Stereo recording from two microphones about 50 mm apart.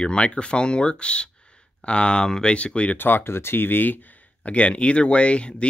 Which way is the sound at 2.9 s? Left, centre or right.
Left.